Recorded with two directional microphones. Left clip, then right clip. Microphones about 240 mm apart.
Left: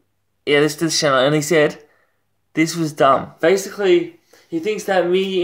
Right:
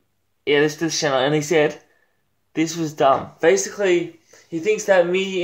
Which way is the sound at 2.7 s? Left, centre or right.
Left.